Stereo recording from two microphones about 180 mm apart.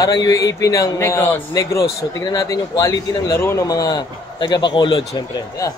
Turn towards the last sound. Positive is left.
turn(degrees=25)  # may be behind; listen again after turning